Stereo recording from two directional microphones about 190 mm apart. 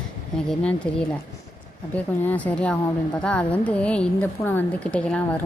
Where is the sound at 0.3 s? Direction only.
5° left (ahead or behind).